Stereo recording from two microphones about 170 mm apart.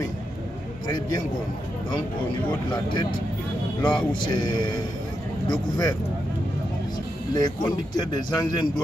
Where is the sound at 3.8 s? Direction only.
5° left (ahead or behind).